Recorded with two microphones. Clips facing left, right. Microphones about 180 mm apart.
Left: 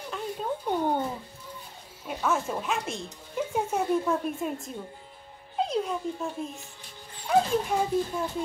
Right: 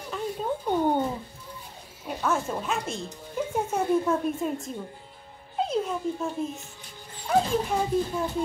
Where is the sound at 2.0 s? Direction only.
Centre (ahead or behind).